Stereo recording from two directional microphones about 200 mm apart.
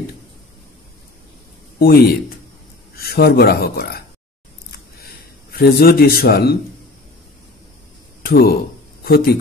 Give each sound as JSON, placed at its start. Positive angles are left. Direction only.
{"t": 1.8, "sound": "speech", "side_deg": 50}
{"t": 4.7, "sound": "a sound", "side_deg": 50}
{"t": 8.2, "sound": "speech", "side_deg": 50}